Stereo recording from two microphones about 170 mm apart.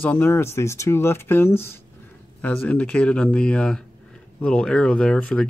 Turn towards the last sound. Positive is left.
turn(degrees=5)  # may be behind; listen again after turning